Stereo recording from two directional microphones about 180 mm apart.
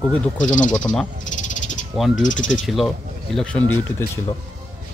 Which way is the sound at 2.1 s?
45° left (ahead or behind).